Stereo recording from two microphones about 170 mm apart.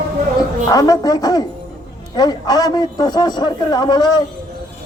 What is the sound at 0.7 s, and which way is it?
A man's voice, 20° left (ahead or behind).